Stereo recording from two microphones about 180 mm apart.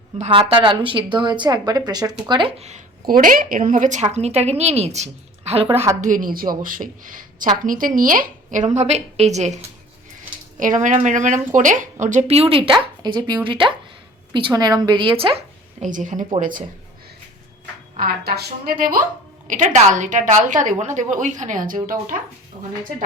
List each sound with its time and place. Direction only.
0.3 s speech: 30° right (ahead or behind)
3.1 s speech: 50° right (ahead or behind)
5.6 s a woman's voice: 15° right (ahead or behind)
6.0 s a woman's voice: 45° right (ahead or behind)
10.6 s a woman's voice: 45° right (ahead or behind); by 15.4 s 30° right (ahead or behind)
15.8 s a woman's voice: 45° right (ahead or behind)
18.0 s a woman's voice: 60° right (ahead or behind)